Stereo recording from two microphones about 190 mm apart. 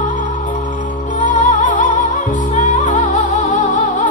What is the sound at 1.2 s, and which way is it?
Music, 40° left (ahead or behind).